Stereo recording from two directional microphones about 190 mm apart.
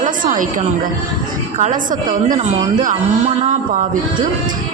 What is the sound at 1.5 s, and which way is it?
A man's voice, 45° right (ahead or behind).